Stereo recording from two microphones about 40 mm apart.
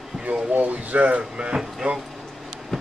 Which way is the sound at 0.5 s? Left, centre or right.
Right.